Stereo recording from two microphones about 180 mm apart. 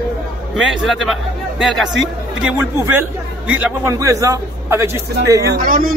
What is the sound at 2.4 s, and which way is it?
A man's voice, 10° right (ahead or behind).